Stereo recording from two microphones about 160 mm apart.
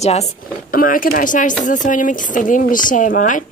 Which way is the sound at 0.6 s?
60° left (ahead or behind).